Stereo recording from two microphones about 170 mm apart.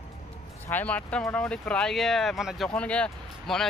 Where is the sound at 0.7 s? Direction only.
10° left (ahead or behind).